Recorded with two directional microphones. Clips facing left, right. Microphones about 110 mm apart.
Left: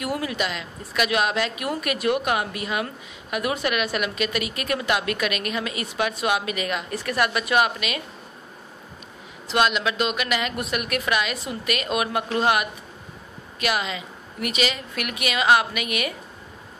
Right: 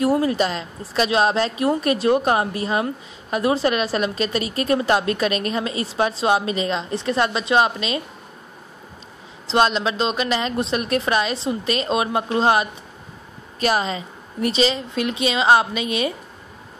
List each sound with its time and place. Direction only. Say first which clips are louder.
0.0 s a woman's voice: right 8 dB; 30° right (ahead or behind)
9.5 s a woman's voice: right 3 dB; 30° right (ahead or behind)